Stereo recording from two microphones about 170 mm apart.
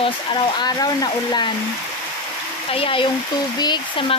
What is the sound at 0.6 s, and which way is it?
Speech, 25° left (ahead or behind).